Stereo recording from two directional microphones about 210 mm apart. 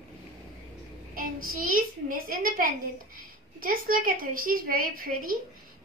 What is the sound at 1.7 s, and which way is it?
A woman's voice, 40° right (ahead or behind).